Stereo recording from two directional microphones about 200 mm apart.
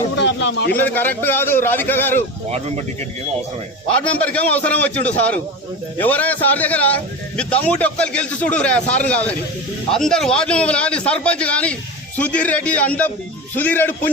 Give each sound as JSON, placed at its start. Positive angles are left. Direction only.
{"t": 0.2, "sound": "a sound", "side_deg": 60}
{"t": 0.7, "sound": "a man's voice", "side_deg": 10}
{"t": 2.5, "sound": "speech", "side_deg": -30}
{"t": 3.9, "sound": "a man's voice", "side_deg": 5}